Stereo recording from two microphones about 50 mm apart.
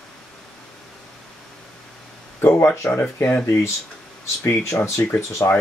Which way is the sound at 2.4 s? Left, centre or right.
Left.